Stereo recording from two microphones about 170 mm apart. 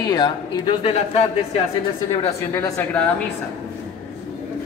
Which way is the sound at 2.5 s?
15° left (ahead or behind).